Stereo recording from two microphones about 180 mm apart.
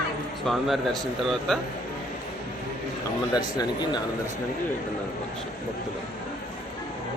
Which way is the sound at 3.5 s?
25° left (ahead or behind).